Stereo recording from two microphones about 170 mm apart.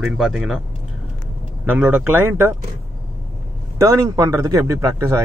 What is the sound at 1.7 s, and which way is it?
Speech, 10° right (ahead or behind).